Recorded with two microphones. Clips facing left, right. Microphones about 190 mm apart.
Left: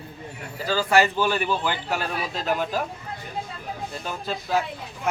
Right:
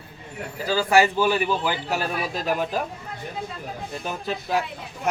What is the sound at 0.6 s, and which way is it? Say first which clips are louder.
Speech: right 1 dB; 10° right (ahead or behind).